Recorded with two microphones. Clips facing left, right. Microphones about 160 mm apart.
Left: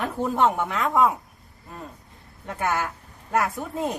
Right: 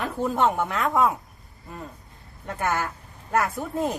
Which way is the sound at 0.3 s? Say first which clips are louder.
Left 1 dB; 5° right (ahead or behind).